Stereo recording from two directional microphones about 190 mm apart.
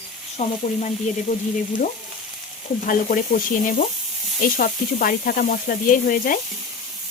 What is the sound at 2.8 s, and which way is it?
Sizzle, 45° left (ahead or behind).